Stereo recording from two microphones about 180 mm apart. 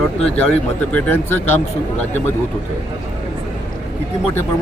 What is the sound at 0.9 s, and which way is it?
Speech, 10° left (ahead or behind).